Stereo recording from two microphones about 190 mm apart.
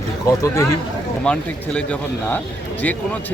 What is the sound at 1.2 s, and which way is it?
A man's voice, 5° left (ahead or behind).